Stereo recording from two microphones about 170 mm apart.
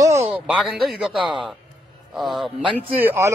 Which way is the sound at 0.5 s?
Centre (ahead or behind).